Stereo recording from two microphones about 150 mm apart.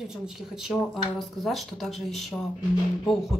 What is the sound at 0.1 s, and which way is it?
Speech, 5° right (ahead or behind).